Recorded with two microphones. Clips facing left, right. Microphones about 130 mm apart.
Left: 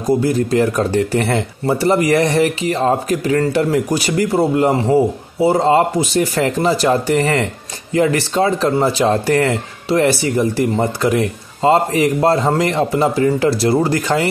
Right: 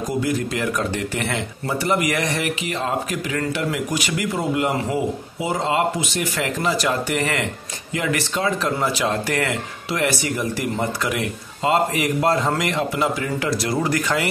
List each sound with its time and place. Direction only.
0.2 s speech: 35° left (ahead or behind)